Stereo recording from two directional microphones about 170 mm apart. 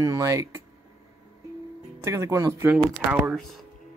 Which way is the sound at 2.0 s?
15° right (ahead or behind).